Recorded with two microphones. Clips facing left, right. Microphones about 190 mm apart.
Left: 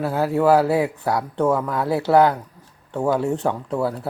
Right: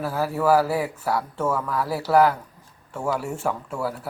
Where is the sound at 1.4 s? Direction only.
20° left (ahead or behind).